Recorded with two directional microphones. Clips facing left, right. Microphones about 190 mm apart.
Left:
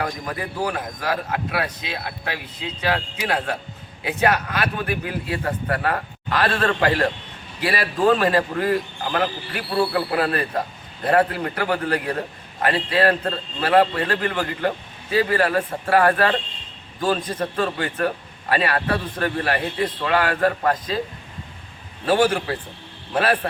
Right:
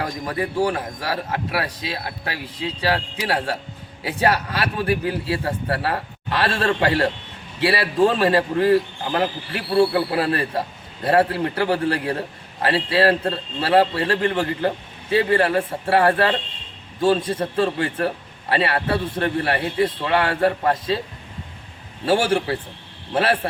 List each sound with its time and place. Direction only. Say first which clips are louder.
0.0 s a man's voice: right 2 dB; 30° right (ahead or behind)
22.0 s a man's voice: even; 25° right (ahead or behind)